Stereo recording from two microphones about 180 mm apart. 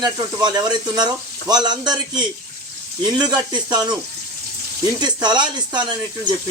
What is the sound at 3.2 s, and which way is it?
Speech, 25° right (ahead or behind).